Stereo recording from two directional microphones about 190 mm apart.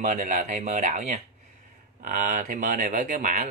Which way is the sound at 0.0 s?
40° right (ahead or behind).